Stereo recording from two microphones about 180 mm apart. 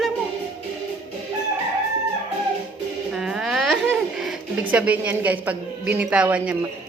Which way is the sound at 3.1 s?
5° right (ahead or behind).